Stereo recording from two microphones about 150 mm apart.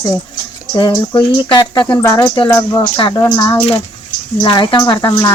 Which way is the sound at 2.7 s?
30° left (ahead or behind).